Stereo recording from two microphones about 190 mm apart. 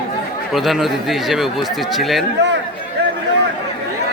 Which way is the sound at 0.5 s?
Centre (ahead or behind).